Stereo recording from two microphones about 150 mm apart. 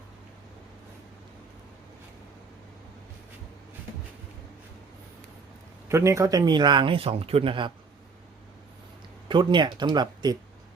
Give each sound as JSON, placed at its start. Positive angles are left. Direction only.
{"t": 5.9, "sound": "speech", "side_deg": -20}
{"t": 9.3, "sound": "speech", "side_deg": -30}